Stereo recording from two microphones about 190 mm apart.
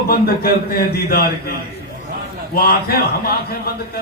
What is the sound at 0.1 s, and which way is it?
A man's voice, 50° left (ahead or behind).